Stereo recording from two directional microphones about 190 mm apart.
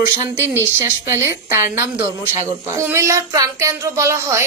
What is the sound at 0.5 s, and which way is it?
Speech, 15° right (ahead or behind).